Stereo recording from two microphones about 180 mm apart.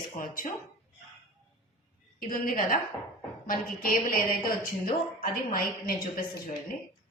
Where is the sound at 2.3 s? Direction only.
50° left (ahead or behind).